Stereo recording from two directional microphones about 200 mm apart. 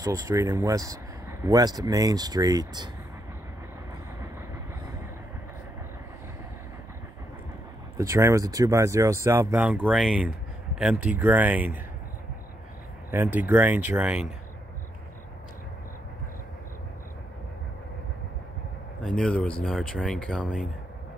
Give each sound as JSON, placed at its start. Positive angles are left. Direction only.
{"t": 0.0, "sound": "speech", "side_deg": -15}
{"t": 8.0, "sound": "speech", "side_deg": -15}
{"t": 13.1, "sound": "speech", "side_deg": -10}
{"t": 19.0, "sound": "speech", "side_deg": 5}